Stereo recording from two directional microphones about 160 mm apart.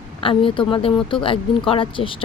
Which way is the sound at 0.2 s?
35° left (ahead or behind).